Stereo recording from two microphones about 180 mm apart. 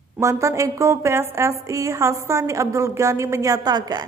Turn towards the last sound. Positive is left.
turn(degrees=-20)  # may be behind; listen again after turning